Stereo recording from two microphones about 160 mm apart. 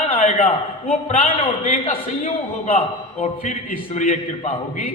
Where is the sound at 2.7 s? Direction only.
45° left (ahead or behind).